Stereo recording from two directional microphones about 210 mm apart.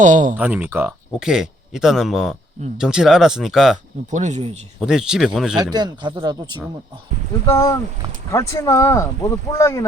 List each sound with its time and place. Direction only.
0.0 s speech: 35° right (ahead or behind)
0.3 s speech: 10° right (ahead or behind)
4.1 s speech: 35° right (ahead or behind)
4.8 s speech: 5° right (ahead or behind)
5.7 s speech: 20° right (ahead or behind)
7.4 s speech: 15° left (ahead or behind)